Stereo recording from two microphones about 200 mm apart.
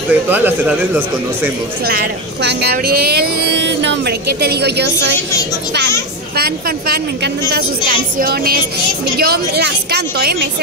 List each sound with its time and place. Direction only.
0.1 s a man's voice: 10° right (ahead or behind)
1.9 s a woman's voice: 50° right (ahead or behind)
3.4 s speech: 60° right (ahead or behind)
6.3 s a woman's voice: 50° right (ahead or behind)